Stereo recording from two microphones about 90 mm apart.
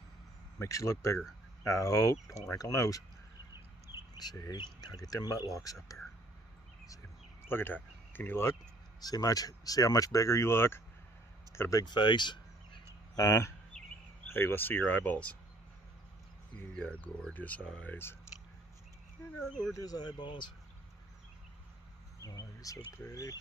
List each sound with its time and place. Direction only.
0.6 s speech: 30° left (ahead or behind)
4.2 s speech: 45° left (ahead or behind)
7.4 s speech: 25° left (ahead or behind)
9.0 s speech: 45° left (ahead or behind); by 10.8 s 25° left (ahead or behind)
11.8 s a sound: 60° left (ahead or behind)
13.2 s speech: 35° left (ahead or behind)
13.7 s a sound: 10° left (ahead or behind)
14.3 s speech: 25° left (ahead or behind)
16.5 s speech: 20° left (ahead or behind)
19.7 s speech: 45° left (ahead or behind)
22.2 s a sound: 40° left (ahead or behind)
23.0 s speech: 40° left (ahead or behind)